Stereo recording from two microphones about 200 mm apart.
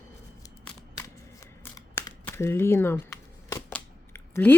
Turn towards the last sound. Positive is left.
turn(degrees=10)  # may be behind; listen again after turning